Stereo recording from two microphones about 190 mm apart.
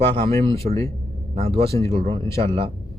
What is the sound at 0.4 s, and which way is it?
Speech, 30° right (ahead or behind).